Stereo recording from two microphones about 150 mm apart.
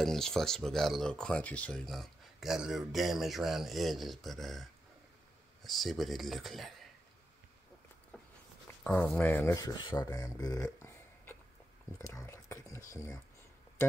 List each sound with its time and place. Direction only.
0.0 s speech: 5° left (ahead or behind)
5.7 s speech: centre (ahead or behind)
8.1 s a sound: 5° left (ahead or behind)
8.8 s speech: 10° left (ahead or behind)